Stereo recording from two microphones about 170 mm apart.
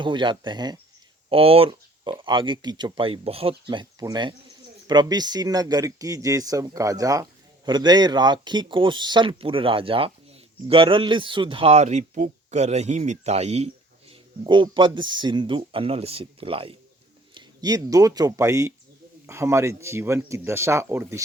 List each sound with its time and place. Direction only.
0.0 s speech: 30° right (ahead or behind)
14.1 s speech: 30° right (ahead or behind)